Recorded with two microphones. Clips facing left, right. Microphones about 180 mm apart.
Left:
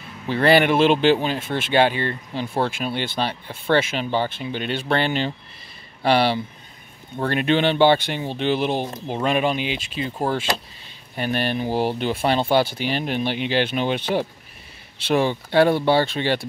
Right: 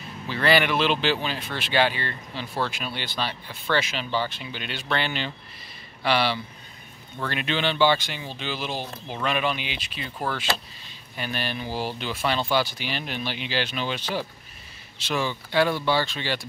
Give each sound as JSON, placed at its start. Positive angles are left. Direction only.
{"t": 0.3, "sound": "speech", "side_deg": 50}
{"t": 3.2, "sound": "speech", "side_deg": 40}
{"t": 8.8, "sound": "speech", "side_deg": 20}
{"t": 9.2, "sound": "speech", "side_deg": 45}
{"t": 9.9, "sound": "speech", "side_deg": 25}
{"t": 11.1, "sound": "speech", "side_deg": 55}